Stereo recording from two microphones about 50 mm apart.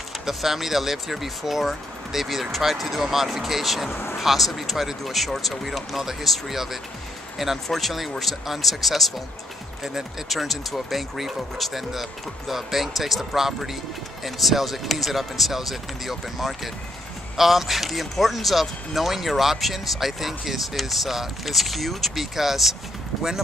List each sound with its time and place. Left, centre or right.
0.2 s speech: centre
3.9 s speech: left
4.2 s speech: centre